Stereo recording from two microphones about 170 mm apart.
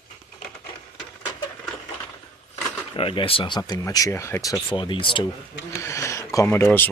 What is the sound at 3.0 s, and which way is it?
Speech, 35° left (ahead or behind).